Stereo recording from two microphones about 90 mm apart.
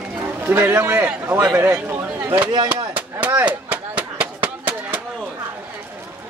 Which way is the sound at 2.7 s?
20° right (ahead or behind).